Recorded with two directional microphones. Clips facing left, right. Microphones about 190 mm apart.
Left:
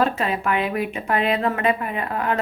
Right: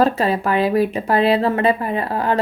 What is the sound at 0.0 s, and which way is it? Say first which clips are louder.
Speech: right 5 dB; 35° right (ahead or behind).